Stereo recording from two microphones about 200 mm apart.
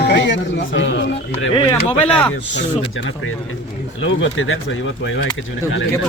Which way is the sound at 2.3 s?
65° left (ahead or behind).